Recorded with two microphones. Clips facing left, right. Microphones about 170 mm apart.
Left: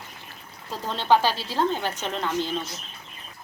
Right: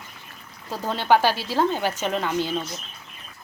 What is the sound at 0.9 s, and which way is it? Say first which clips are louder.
Speech: right 2 dB; 10° right (ahead or behind).